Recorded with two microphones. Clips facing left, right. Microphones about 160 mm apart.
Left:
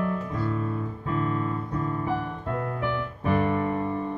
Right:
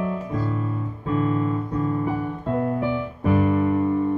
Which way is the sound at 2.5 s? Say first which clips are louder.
Right 6 dB; 25° right (ahead or behind).